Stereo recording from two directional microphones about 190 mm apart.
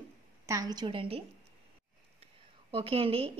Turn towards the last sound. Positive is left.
turn(degrees=-30)  # may be behind; listen again after turning